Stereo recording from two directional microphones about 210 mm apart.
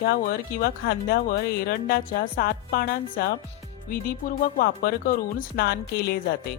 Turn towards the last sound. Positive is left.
turn(degrees=50)  # may be behind; listen again after turning